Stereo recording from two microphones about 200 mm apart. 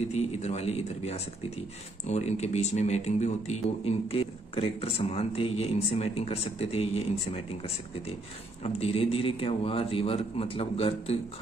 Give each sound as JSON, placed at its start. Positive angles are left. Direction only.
{"t": 0.1, "sound": "a man's voice", "side_deg": 35}